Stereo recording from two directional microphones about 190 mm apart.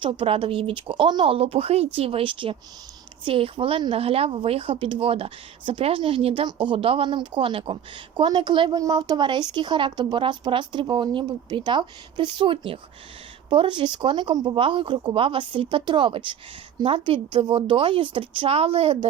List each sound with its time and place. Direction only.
0.0 s a woman's voice: 25° right (ahead or behind)